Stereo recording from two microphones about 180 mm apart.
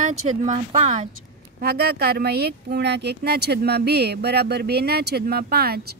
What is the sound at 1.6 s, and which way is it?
Speech, 55° right (ahead or behind).